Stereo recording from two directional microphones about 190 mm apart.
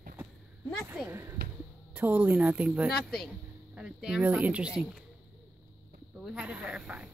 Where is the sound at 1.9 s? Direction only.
10° right (ahead or behind).